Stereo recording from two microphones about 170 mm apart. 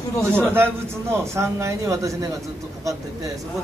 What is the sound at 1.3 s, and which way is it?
A man's voice, 15° right (ahead or behind).